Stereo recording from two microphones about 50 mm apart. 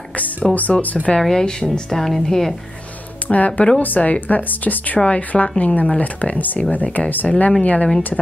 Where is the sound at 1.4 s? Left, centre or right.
Centre.